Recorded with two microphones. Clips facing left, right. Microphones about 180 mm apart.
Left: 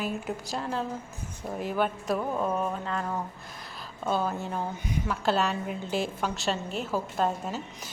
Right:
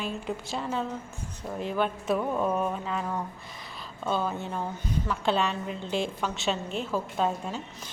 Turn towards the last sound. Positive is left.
turn(degrees=5)  # may be behind; listen again after turning